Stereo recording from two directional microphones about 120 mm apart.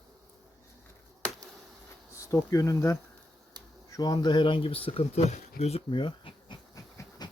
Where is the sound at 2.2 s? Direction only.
25° left (ahead or behind); by 6.0 s 60° left (ahead or behind).